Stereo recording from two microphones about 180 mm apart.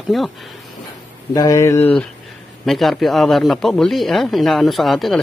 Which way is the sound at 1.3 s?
20° left (ahead or behind).